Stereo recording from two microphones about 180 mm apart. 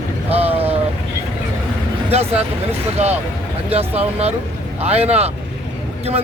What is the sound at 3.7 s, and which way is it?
Speech, 35° right (ahead or behind).